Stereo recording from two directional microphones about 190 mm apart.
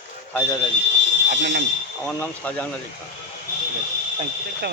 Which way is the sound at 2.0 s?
5° left (ahead or behind).